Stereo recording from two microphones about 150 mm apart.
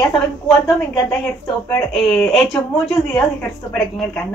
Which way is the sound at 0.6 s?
15° left (ahead or behind).